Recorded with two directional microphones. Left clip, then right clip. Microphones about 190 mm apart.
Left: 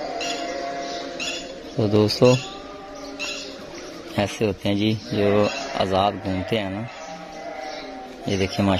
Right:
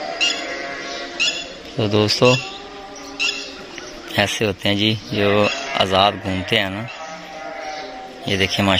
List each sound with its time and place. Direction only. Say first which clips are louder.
0.2 s music: right 11 dB; 60° left (ahead or behind)
1.2 s squawk: right 11 dB; 60° left (ahead or behind)
1.8 s speech: right 2 dB; 10° left (ahead or behind)
4.1 s speech: right 5 dB; 5° right (ahead or behind)
8.3 s speech: right 5 dB; centre (ahead or behind)